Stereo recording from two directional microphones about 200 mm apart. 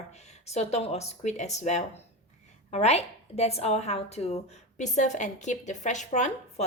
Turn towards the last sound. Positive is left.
turn(degrees=35)  # may be behind; listen again after turning